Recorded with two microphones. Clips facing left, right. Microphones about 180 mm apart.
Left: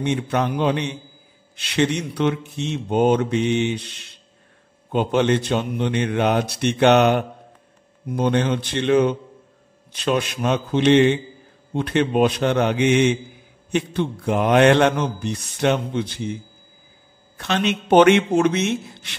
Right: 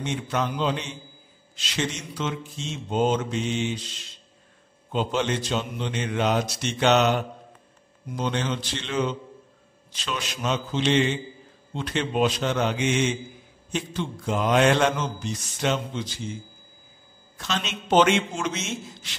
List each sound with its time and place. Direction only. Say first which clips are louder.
0.0 s speech: left 6 dB; 60° left (ahead or behind)
17.4 s speech: left 8 dB; 60° left (ahead or behind)